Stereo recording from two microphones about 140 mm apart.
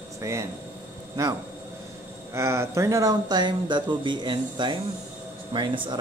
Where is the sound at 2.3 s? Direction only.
20° right (ahead or behind); by 6.0 s 35° right (ahead or behind).